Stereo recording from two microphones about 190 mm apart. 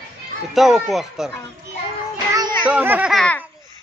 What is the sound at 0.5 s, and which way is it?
Speech, centre (ahead or behind).